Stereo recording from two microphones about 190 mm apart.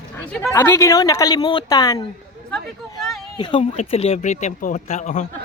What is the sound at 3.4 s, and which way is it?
Speech, 25° left (ahead or behind).